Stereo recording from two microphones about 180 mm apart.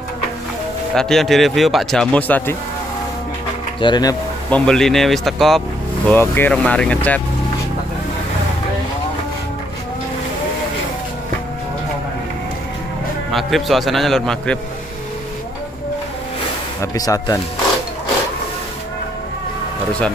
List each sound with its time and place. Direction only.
0.9 s speech: centre (ahead or behind)
3.8 s speech: 20° left (ahead or behind)
4.5 s speech: 5° left (ahead or behind)
13.3 s speech: centre (ahead or behind)
16.8 s speech: 20° left (ahead or behind)